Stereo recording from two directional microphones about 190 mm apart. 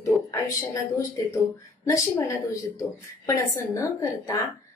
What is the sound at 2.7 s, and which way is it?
A woman's voice, 15° left (ahead or behind).